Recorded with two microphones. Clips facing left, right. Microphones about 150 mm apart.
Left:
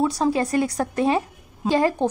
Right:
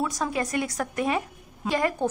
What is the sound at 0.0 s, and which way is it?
A woman's voice, 30° left (ahead or behind).